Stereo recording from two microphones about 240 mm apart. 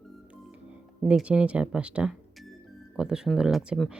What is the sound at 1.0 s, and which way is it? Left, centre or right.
Speech, centre.